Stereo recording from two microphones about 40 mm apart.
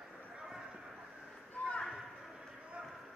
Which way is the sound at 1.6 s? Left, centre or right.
Left.